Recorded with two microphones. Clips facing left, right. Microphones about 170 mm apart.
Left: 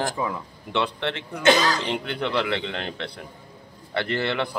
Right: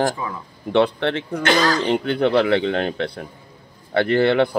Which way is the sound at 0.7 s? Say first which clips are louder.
Right 8 dB; 55° right (ahead or behind).